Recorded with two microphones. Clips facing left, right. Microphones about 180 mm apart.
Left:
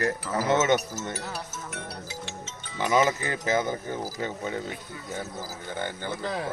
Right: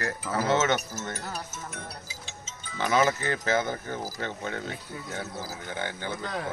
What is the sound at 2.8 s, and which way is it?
Speech, 15° left (ahead or behind).